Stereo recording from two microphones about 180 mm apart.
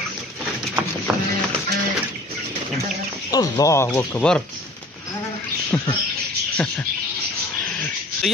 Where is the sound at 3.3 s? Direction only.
20° left (ahead or behind).